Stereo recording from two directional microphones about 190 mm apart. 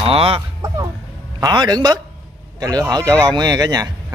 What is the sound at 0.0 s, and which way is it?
Speech, 30° right (ahead or behind).